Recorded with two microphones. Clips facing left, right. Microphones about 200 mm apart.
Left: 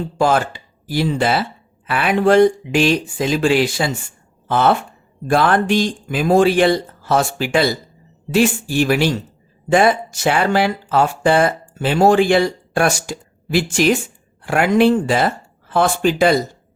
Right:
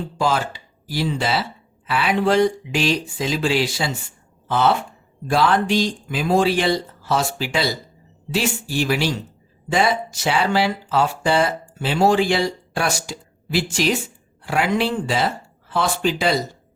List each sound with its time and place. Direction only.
0.2 s speech: 50° left (ahead or behind)